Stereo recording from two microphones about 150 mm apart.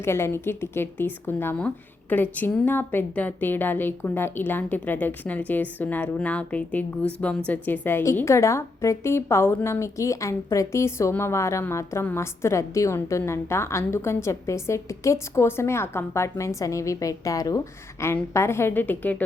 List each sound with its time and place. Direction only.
0.0 s speech: 15° left (ahead or behind)